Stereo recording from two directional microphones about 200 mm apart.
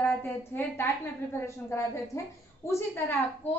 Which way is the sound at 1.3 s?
15° left (ahead or behind).